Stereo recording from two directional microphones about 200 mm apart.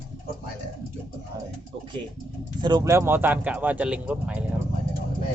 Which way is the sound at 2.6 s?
20° right (ahead or behind).